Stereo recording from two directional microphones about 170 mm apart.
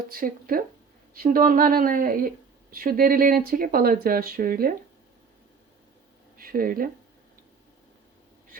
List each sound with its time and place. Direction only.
0.1 s a woman's voice: 55° right (ahead or behind)
6.3 s speech: 60° right (ahead or behind)